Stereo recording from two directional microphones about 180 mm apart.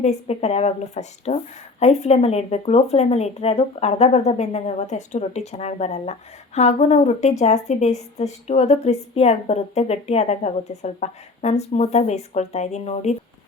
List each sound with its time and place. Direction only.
0.0 s speech: 35° left (ahead or behind)